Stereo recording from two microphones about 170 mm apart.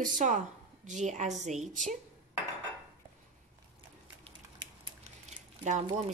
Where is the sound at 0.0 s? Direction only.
45° right (ahead or behind).